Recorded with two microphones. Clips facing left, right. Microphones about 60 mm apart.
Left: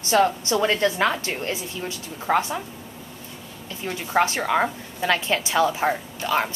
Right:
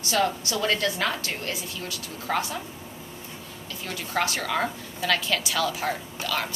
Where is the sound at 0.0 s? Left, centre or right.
Left.